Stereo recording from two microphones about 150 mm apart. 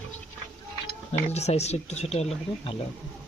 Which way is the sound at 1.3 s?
45° left (ahead or behind).